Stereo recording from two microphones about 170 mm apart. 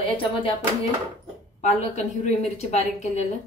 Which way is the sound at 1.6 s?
40° left (ahead or behind).